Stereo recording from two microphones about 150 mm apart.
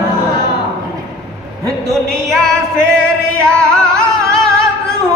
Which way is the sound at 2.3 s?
5° left (ahead or behind).